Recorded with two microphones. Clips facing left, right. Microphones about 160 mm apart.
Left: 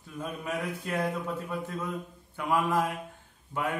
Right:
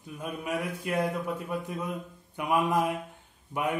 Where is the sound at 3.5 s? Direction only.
15° right (ahead or behind).